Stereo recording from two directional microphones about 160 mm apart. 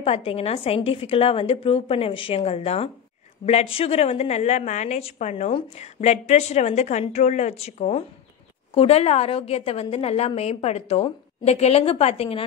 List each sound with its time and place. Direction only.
0.0 s a woman's voice: 35° left (ahead or behind)